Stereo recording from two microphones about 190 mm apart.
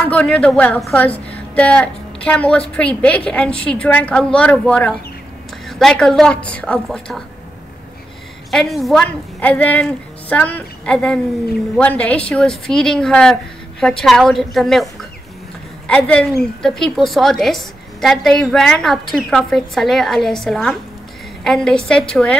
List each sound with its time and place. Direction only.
0.1 s a woman's voice: 5° left (ahead or behind)
8.5 s a woman's voice: centre (ahead or behind)